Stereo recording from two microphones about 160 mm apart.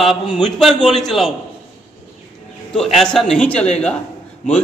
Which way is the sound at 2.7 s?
Centre (ahead or behind).